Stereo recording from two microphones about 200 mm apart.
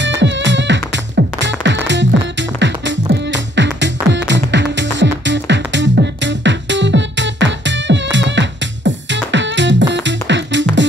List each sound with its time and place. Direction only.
0.0 s music: 65° right (ahead or behind)